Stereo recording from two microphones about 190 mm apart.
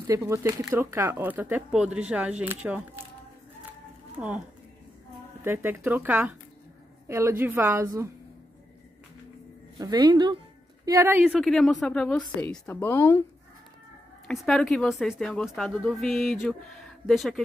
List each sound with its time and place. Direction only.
0.3 s speech: 15° right (ahead or behind)
5.4 s speech: 10° right (ahead or behind)
9.8 s speech: 20° right (ahead or behind)
10.9 s a woman's voice: 10° right (ahead or behind); by 13.2 s 10° left (ahead or behind)
14.2 s a woman's voice: 5° left (ahead or behind)